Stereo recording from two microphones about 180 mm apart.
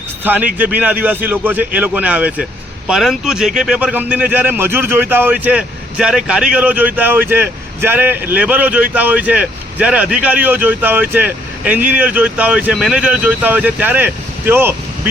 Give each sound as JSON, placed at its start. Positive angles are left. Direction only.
{"t": 0.3, "sound": "a man's voice", "side_deg": -10}